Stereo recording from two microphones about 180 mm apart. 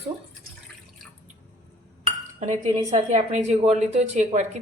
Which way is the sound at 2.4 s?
40° right (ahead or behind).